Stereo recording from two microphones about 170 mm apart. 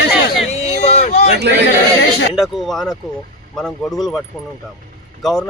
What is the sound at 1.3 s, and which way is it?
Speech, 80° right.